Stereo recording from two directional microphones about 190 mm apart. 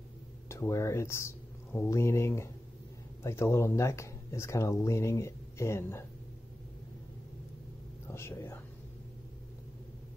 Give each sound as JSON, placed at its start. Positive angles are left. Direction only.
{"t": 0.5, "sound": "speech", "side_deg": 15}
{"t": 8.1, "sound": "speech", "side_deg": 15}